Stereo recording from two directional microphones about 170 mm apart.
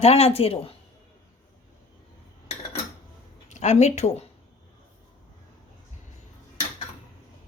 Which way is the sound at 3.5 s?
40° left (ahead or behind).